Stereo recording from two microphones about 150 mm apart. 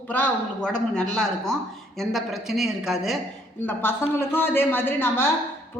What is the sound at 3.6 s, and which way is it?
A woman's voice, 15° left (ahead or behind).